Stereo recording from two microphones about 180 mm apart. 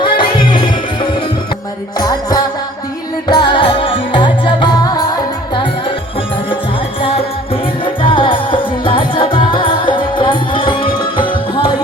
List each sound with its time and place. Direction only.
0.0 s music: 25° left (ahead or behind)
2.0 s music: 20° left (ahead or behind)
7.0 s music: 30° left (ahead or behind)